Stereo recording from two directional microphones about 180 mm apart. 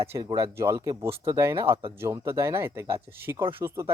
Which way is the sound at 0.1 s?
20° right (ahead or behind).